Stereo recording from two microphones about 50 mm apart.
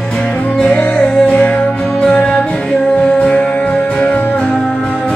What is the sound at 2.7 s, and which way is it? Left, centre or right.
Music, centre.